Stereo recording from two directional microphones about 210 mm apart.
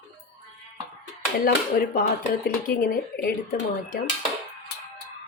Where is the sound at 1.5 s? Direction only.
45° left (ahead or behind).